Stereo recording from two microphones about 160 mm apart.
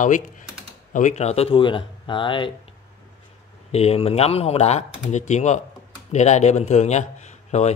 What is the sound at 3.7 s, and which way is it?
Speech, 40° left (ahead or behind).